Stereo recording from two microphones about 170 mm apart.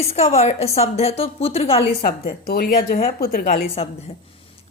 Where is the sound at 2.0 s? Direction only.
65° left (ahead or behind).